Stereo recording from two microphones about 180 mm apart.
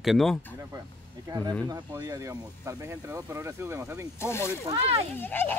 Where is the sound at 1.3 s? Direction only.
20° right (ahead or behind).